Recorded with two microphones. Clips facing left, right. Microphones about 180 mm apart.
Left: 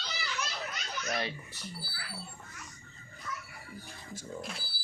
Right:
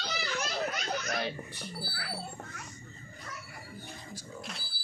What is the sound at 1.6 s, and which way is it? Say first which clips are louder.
Speech: right 2 dB; 60° right (ahead or behind).